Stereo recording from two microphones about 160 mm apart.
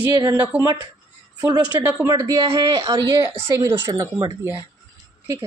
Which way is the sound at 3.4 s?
15° right (ahead or behind).